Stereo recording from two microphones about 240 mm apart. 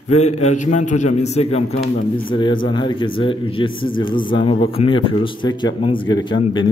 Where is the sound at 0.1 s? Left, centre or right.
Left.